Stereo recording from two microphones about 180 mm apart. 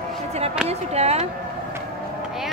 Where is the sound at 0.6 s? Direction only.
35° right (ahead or behind).